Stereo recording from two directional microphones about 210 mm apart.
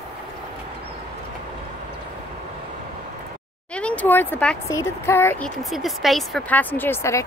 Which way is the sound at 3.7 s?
5° left (ahead or behind).